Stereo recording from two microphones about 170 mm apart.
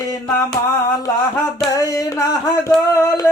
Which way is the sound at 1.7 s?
20° left (ahead or behind).